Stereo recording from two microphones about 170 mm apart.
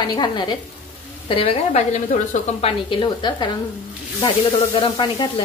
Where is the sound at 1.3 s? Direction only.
35° left (ahead or behind).